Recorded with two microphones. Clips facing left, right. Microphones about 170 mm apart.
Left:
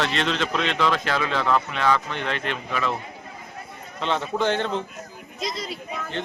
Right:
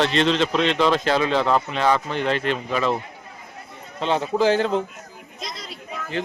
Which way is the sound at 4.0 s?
35° right (ahead or behind).